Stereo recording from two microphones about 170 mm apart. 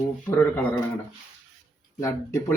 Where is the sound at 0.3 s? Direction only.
10° left (ahead or behind).